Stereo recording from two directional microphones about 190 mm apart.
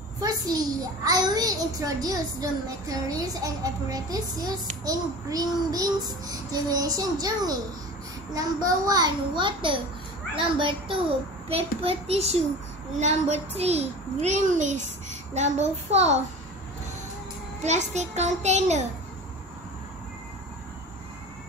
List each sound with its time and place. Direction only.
0.2 s a child's voice: 20° right (ahead or behind); by 16.2 s 35° right (ahead or behind)
17.6 s a child's voice: 40° right (ahead or behind)